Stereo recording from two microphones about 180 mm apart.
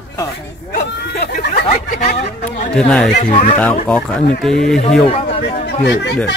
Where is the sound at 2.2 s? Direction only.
40° left (ahead or behind).